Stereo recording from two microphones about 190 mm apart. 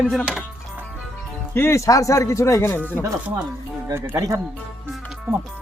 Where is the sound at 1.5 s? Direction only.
15° left (ahead or behind).